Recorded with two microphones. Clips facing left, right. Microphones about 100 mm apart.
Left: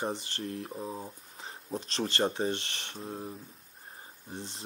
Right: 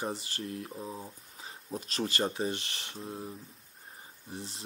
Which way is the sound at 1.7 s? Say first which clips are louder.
Left 1 dB; 5° right (ahead or behind).